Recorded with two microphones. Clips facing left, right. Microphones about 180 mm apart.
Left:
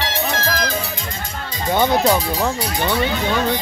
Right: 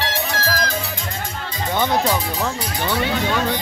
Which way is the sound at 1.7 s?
25° left (ahead or behind).